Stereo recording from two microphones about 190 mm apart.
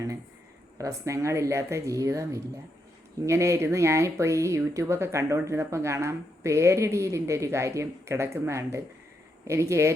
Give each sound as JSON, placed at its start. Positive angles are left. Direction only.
{"t": 0.8, "sound": "speech", "side_deg": -15}